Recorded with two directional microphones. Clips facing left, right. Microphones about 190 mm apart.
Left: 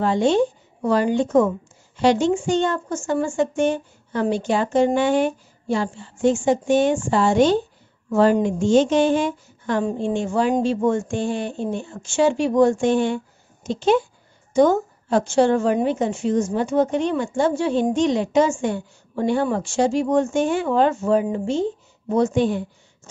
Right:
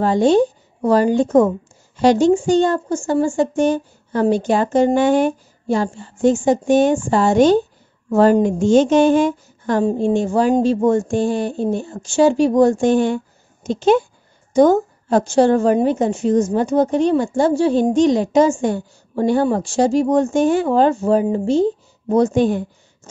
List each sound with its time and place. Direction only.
0.0 s a woman's voice: 40° right (ahead or behind)